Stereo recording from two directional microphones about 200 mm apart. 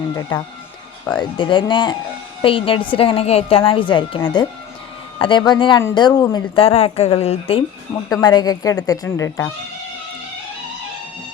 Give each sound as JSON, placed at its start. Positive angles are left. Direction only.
{"t": 0.2, "sound": "a woman's voice", "side_deg": 15}
{"t": 6.6, "sound": "speech", "side_deg": 30}
{"t": 8.1, "sound": "a woman's voice", "side_deg": 20}